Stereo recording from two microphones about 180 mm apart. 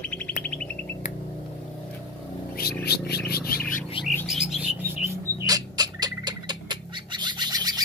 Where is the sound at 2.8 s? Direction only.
60° left (ahead or behind).